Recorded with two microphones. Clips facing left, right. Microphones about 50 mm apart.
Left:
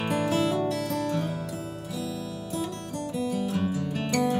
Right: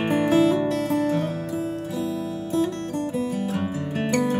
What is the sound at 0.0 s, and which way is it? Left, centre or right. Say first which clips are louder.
Music: right 6 dB; right.